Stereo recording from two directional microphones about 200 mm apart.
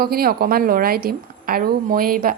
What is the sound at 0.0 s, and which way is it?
A woman's voice, 50° right (ahead or behind).